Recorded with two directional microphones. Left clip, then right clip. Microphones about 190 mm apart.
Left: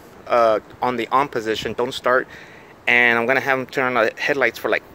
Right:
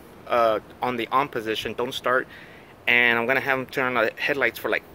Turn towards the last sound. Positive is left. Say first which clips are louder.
# left 4 dB
turn(degrees=30)  # may be behind; listen again after turning